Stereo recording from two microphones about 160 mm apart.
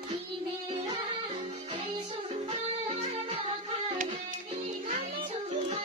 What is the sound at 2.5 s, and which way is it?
Music, 40° right (ahead or behind).